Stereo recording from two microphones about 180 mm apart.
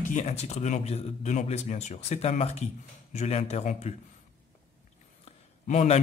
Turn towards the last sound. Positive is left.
turn(degrees=40)  # may be behind; listen again after turning